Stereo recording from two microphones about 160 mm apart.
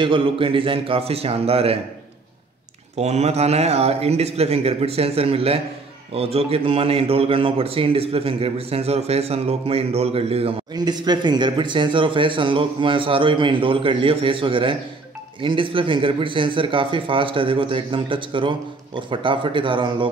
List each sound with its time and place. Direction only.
0.0 s a man's voice: 30° right (ahead or behind)
3.0 s a man's voice: 40° right (ahead or behind)
10.7 s a man's voice: 25° right (ahead or behind)